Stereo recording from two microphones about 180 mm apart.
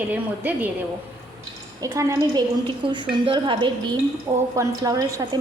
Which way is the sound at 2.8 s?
25° right (ahead or behind).